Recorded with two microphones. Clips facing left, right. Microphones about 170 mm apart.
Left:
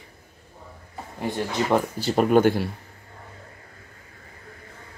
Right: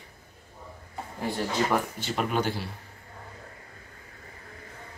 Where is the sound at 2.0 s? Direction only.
45° left (ahead or behind).